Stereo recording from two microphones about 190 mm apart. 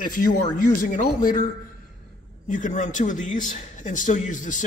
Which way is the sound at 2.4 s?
40° left (ahead or behind).